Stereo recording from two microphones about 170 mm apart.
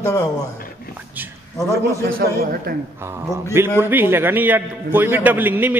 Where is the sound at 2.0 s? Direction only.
60° right (ahead or behind).